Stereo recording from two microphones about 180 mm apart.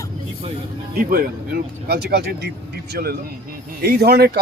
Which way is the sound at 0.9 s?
55° right (ahead or behind).